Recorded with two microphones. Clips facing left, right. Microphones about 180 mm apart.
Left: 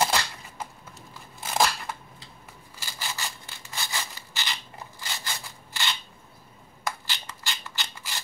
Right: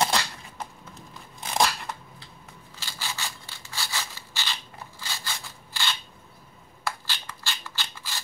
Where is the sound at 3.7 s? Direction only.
15° left (ahead or behind).